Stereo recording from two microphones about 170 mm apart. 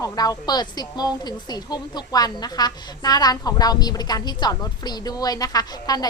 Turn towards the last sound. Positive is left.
turn(degrees=20)  # may be behind; listen again after turning